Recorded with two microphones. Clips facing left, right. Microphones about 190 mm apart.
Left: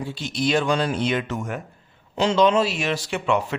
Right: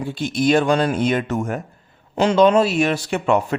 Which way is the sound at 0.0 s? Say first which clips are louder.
Right 5 dB; 50° right (ahead or behind).